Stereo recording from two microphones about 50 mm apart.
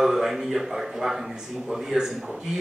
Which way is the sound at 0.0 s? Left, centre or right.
Centre.